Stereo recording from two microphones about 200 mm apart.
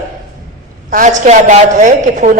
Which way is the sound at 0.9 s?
40° right (ahead or behind).